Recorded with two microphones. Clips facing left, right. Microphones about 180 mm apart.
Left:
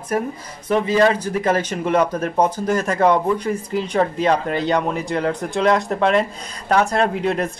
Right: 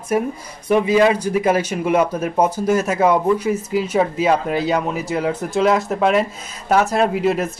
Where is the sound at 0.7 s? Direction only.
10° right (ahead or behind).